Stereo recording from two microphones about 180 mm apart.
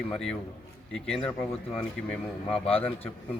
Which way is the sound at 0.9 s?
Centre (ahead or behind).